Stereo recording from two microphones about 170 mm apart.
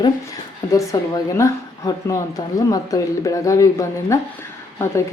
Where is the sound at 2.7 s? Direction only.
20° left (ahead or behind).